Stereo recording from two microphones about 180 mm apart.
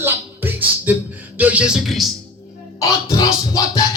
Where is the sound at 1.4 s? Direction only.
5° right (ahead or behind).